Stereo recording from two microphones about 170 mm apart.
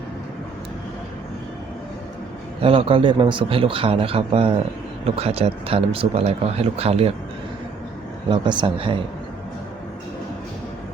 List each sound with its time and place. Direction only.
2.6 s speech: 35° right (ahead or behind)
8.3 s speech: 25° right (ahead or behind)